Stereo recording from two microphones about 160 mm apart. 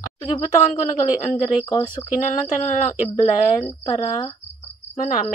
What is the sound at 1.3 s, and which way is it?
Speech, 30° left (ahead or behind).